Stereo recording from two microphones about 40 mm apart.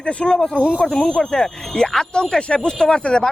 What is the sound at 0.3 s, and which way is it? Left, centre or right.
Speech, centre.